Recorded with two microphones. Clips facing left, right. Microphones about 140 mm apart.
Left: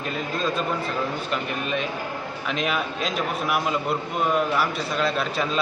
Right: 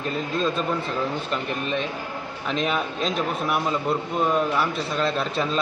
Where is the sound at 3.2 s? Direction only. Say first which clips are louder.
Left 1 dB; 5° left (ahead or behind).